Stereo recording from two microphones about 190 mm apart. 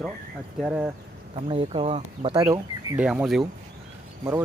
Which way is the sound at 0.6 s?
5° right (ahead or behind).